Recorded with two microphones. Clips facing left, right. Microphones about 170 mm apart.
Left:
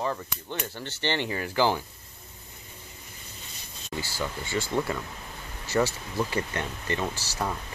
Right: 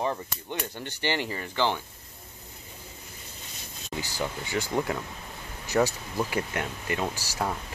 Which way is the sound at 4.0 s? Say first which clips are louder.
Right 1 dB; 15° right (ahead or behind).